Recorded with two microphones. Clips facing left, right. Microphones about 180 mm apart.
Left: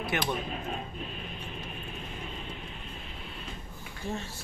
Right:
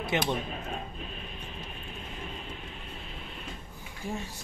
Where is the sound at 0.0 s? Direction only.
20° right (ahead or behind).